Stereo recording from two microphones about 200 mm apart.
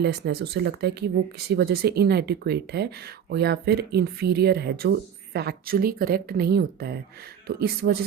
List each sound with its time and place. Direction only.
0.0 s speech: 55° right (ahead or behind)